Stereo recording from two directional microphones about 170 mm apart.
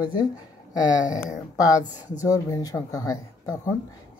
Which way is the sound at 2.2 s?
20° left (ahead or behind).